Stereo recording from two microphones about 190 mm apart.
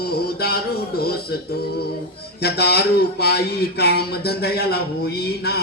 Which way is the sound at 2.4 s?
60° left (ahead or behind).